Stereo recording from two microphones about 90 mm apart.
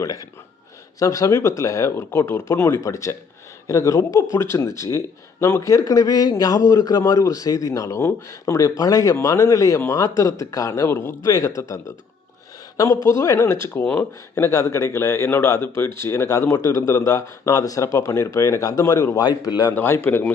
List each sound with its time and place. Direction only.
0.0 s speech: 40° left (ahead or behind); by 2.8 s 25° left (ahead or behind)
2.8 s speech: 35° left (ahead or behind)
10.8 s speech: 30° left (ahead or behind)
19.2 s a man's voice: 50° left (ahead or behind)
19.7 s speech: 20° left (ahead or behind)